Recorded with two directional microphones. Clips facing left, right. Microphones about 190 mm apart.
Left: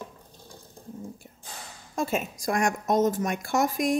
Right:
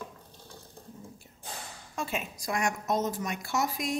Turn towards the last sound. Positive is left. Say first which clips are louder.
# left 6 dB
turn(degrees=50)  # may be behind; listen again after turning